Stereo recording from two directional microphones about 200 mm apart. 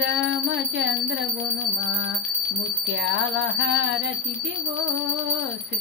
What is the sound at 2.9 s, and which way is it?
Speech, 60° right (ahead or behind).